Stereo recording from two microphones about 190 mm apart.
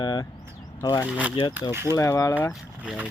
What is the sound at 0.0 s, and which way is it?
Vehicle, 25° left (ahead or behind).